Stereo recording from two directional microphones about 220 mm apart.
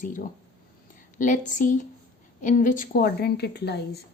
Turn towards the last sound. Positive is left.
turn(degrees=50)  # may be behind; listen again after turning